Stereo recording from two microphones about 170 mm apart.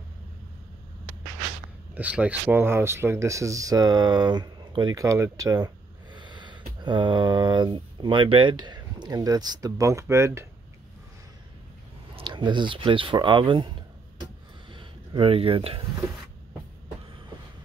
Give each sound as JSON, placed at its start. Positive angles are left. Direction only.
{"t": 2.0, "sound": "speech", "side_deg": -10}
{"t": 12.2, "sound": "speech", "side_deg": -30}
{"t": 14.7, "sound": "a sound", "side_deg": -30}